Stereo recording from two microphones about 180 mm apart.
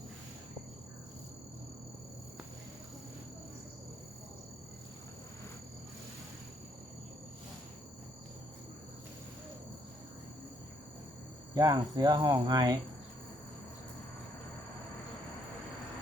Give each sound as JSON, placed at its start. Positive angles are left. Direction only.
{"t": 11.5, "sound": "cricket", "side_deg": -20}